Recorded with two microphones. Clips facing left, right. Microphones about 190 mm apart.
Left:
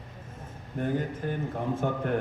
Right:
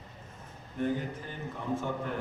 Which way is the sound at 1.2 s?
60° left (ahead or behind).